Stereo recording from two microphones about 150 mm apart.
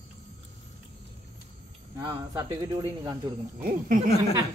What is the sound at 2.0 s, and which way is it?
Speech, 25° right (ahead or behind).